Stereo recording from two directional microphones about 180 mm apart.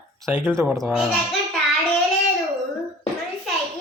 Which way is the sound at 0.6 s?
15° right (ahead or behind).